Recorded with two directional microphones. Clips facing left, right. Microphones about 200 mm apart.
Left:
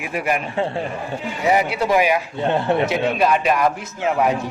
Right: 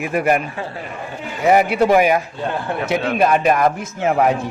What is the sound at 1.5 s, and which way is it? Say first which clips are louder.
Speech: right 5 dB; 50° right (ahead or behind).